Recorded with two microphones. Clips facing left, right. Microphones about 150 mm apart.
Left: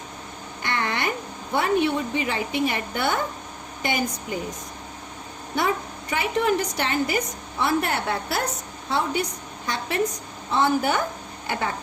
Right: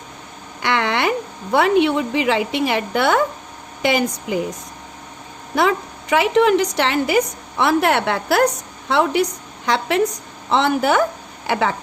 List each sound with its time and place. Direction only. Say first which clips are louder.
0.6 s a woman's voice: right 7 dB; 90° right
5.5 s a woman's voice: right 6 dB; 90° right